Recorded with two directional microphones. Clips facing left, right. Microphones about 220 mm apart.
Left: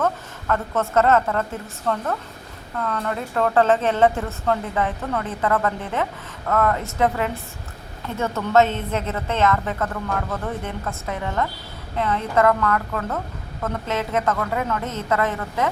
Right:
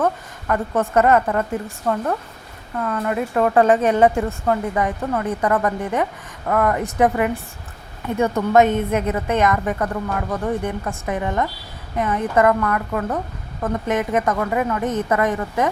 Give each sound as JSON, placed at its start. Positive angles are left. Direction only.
{"t": 0.0, "sound": "a woman's voice", "side_deg": -15}